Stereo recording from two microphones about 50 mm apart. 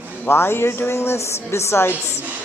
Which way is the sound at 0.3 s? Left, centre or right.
Left.